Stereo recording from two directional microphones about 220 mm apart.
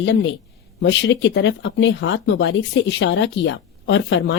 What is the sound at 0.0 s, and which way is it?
Speech, 55° left (ahead or behind).